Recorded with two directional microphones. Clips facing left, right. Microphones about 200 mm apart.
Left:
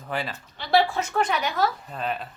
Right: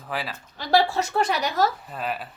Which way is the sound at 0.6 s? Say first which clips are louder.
Right 1 dB; 40° right (ahead or behind).